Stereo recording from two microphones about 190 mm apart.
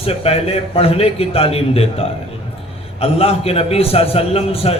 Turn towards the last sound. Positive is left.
turn(degrees=30)  # may be behind; listen again after turning